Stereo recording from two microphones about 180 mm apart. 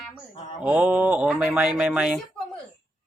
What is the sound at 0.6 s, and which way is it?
Speech, 10° right (ahead or behind).